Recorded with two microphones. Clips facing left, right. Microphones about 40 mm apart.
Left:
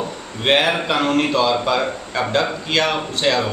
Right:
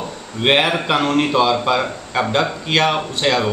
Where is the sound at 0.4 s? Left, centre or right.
Centre.